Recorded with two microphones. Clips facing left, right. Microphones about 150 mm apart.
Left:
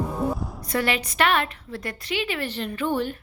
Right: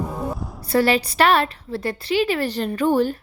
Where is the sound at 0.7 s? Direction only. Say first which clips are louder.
Right 7 dB; 35° right (ahead or behind).